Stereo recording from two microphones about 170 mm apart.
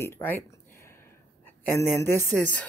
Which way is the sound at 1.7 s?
15° left (ahead or behind).